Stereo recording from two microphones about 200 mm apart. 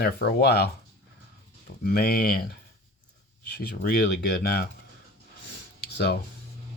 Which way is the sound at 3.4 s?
50° left (ahead or behind).